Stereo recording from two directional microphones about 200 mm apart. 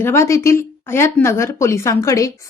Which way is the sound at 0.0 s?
10° left (ahead or behind).